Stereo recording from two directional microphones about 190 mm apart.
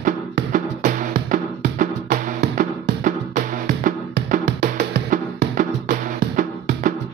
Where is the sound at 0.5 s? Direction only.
45° right (ahead or behind).